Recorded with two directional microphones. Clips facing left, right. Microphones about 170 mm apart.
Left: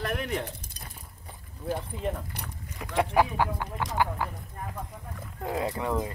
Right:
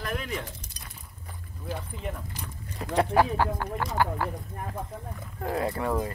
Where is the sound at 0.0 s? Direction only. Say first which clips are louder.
Left 2 dB; 60° left (ahead or behind).